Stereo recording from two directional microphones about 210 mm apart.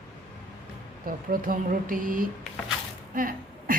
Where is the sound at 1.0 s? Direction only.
40° right (ahead or behind).